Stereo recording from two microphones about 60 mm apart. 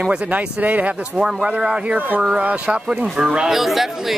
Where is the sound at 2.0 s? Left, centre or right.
Right.